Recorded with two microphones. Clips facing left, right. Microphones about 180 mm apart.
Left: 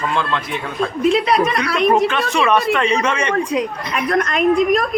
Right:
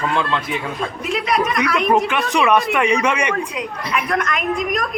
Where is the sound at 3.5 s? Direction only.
35° left (ahead or behind).